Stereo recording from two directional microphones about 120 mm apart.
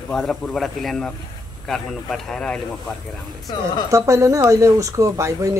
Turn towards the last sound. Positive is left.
turn(degrees=-25)  # may be behind; listen again after turning